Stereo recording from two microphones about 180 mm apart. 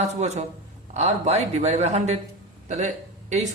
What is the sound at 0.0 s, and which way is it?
Speech, 40° right (ahead or behind).